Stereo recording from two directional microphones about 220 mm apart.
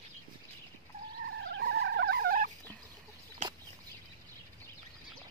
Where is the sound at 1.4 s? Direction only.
50° right (ahead or behind).